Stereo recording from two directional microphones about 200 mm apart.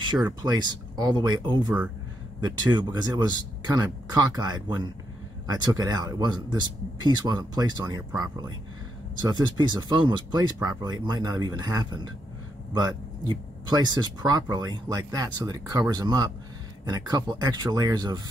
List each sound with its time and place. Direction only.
0.0 s speech: 20° right (ahead or behind)